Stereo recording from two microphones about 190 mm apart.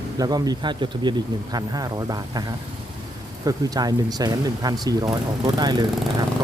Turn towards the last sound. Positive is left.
turn(degrees=-20)  # may be behind; listen again after turning